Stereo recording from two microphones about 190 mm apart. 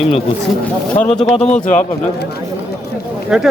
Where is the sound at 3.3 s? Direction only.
Centre (ahead or behind).